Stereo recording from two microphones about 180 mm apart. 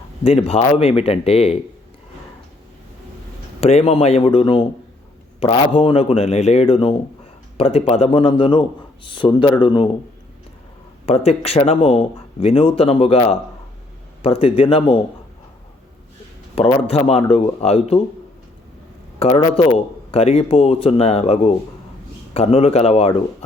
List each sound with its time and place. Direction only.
0.3 s a man's voice: 35° left (ahead or behind)
3.6 s a man's voice: 35° left (ahead or behind)
11.0 s a man's voice: 35° left (ahead or behind)
14.2 s a man's voice: 30° left (ahead or behind)
16.6 s a man's voice: 35° left (ahead or behind)
19.2 s a man's voice: 30° left (ahead or behind)